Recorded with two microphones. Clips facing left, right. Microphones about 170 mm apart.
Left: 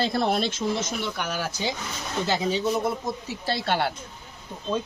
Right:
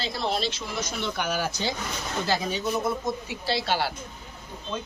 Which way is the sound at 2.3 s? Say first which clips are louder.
Left 3 dB; 30° left (ahead or behind).